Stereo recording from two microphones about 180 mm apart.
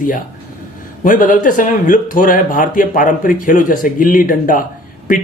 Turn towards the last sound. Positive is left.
turn(degrees=50)  # may be behind; listen again after turning